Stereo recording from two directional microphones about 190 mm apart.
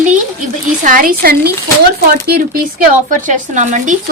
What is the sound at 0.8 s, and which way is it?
Speech, 45° right (ahead or behind).